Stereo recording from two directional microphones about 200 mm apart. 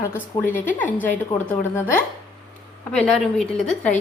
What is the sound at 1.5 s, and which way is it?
A woman's voice, 10° left (ahead or behind).